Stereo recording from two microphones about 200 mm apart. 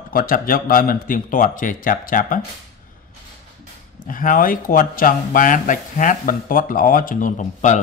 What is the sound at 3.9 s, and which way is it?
Speech, 40° left (ahead or behind).